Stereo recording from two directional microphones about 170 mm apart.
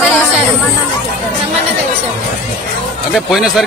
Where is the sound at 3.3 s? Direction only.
Centre (ahead or behind).